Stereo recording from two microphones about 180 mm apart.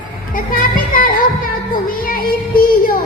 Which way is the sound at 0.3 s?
50° left (ahead or behind).